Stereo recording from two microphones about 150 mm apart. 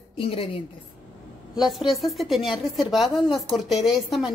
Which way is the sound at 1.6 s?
Centre (ahead or behind).